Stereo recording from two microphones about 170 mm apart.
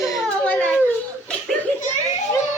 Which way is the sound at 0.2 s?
10° left (ahead or behind).